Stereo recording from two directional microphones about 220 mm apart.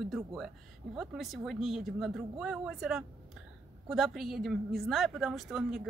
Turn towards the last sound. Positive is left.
turn(degrees=0)  # may be behind; listen again after turning